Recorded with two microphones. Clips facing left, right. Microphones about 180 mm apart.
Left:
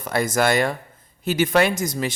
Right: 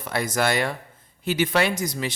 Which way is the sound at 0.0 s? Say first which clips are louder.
Left 4 dB; 45° left (ahead or behind).